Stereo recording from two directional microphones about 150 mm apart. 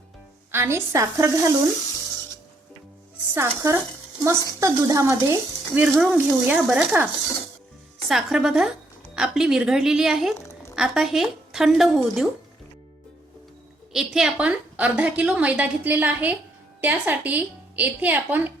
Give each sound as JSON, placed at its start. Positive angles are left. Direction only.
{"t": 0.5, "sound": "stir", "side_deg": -15}
{"t": 3.3, "sound": "stir", "side_deg": -20}
{"t": 5.8, "sound": "a woman's voice", "side_deg": -5}
{"t": 10.3, "sound": "a sound", "side_deg": 20}
{"t": 10.8, "sound": "speech", "side_deg": -5}
{"t": 13.9, "sound": "a woman's voice", "side_deg": -5}